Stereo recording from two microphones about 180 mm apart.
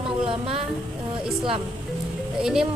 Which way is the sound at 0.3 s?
30° right (ahead or behind).